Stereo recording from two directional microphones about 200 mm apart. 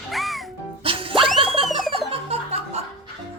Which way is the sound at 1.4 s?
25° right (ahead or behind).